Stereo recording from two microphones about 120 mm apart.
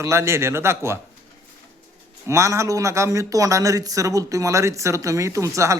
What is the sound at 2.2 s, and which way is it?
Speech, 25° right (ahead or behind).